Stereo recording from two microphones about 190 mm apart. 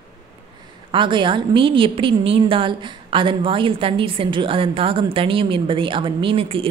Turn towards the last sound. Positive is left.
turn(degrees=-30)  # may be behind; listen again after turning